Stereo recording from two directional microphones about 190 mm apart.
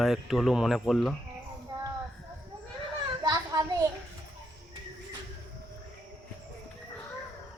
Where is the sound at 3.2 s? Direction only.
20° right (ahead or behind).